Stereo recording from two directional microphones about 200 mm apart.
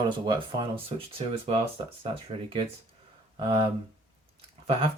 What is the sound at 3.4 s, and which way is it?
Speech, 30° right (ahead or behind).